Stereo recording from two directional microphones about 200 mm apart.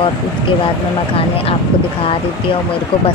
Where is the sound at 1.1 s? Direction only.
30° left (ahead or behind).